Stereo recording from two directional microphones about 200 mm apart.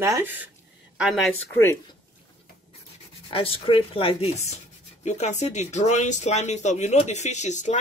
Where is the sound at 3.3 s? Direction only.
25° left (ahead or behind).